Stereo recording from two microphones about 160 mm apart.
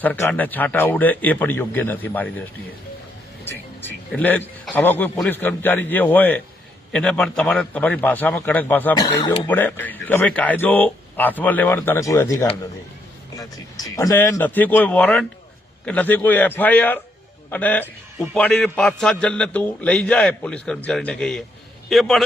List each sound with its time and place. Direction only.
0.0 s a man's voice: 10° left (ahead or behind)
3.4 s a man's voice: 10° left (ahead or behind)
9.0 s speech: 25° left (ahead or behind)
9.5 s a man's voice: 10° left (ahead or behind)